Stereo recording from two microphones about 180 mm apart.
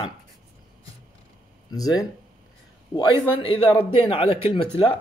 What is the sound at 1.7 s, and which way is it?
Speech, 20° left (ahead or behind).